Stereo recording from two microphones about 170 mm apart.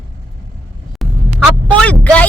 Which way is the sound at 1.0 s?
Centre (ahead or behind).